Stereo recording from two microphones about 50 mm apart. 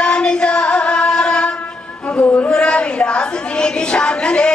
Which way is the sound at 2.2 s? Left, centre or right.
Left.